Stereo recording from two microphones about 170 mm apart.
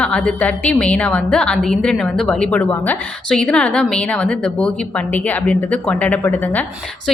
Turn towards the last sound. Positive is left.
turn(degrees=10)  # may be behind; listen again after turning